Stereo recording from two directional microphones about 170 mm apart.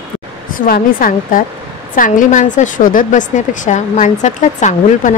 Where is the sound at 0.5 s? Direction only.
60° left (ahead or behind).